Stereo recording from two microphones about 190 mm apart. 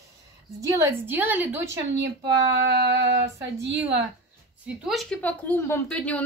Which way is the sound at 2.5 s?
60° right (ahead or behind).